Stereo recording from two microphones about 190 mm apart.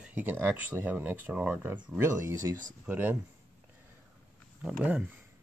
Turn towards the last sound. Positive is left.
turn(degrees=-5)  # may be behind; listen again after turning